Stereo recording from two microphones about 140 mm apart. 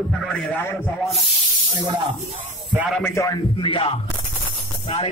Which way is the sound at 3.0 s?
20° left (ahead or behind).